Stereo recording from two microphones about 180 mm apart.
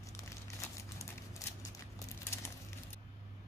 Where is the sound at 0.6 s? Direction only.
15° left (ahead or behind).